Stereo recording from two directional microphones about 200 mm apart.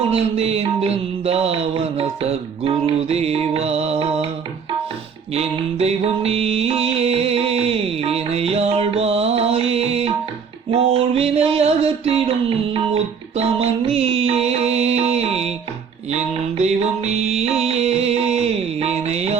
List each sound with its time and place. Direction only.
0.1 s mantra: 30° right (ahead or behind)
5.3 s music: 30° right (ahead or behind)
10.7 s a sound: 30° right (ahead or behind)
16.0 s music: 35° right (ahead or behind)